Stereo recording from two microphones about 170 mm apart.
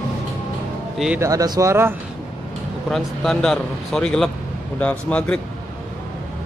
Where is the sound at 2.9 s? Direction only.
5° left (ahead or behind).